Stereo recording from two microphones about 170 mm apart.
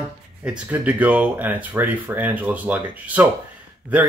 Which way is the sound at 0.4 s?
10° right (ahead or behind).